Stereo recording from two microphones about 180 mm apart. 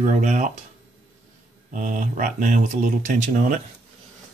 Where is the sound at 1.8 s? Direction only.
45° right (ahead or behind).